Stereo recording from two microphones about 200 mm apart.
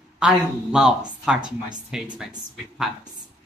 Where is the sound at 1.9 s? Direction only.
Centre (ahead or behind).